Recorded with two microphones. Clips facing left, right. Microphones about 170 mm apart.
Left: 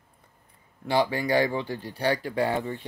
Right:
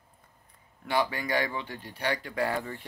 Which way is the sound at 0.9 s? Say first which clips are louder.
Left 5 dB; 30° left (ahead or behind).